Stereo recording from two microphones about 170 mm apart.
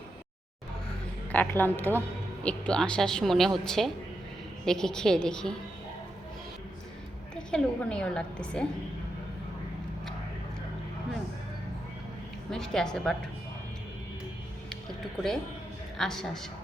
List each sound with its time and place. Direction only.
1.3 s a woman's voice: 10° left (ahead or behind)
7.3 s speech: 5° left (ahead or behind)
12.5 s speech: 5° left (ahead or behind)
16.0 s speech: centre (ahead or behind)